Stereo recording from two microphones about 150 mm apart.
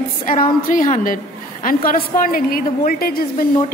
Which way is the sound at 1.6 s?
70° left (ahead or behind).